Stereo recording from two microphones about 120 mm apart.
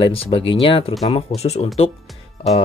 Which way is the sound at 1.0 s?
60° left (ahead or behind).